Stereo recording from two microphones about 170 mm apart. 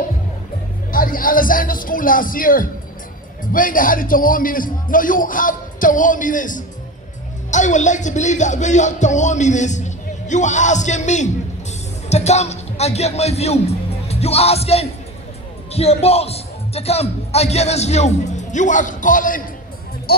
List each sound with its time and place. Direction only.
0.9 s a man's voice: 55° left (ahead or behind)
20.1 s speech: 65° left (ahead or behind)